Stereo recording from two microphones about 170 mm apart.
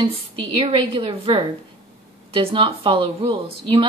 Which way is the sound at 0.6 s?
30° right (ahead or behind).